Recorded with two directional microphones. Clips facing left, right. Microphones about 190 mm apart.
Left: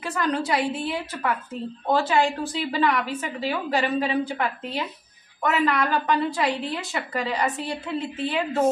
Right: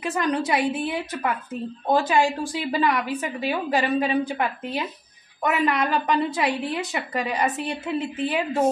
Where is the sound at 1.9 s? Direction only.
15° right (ahead or behind).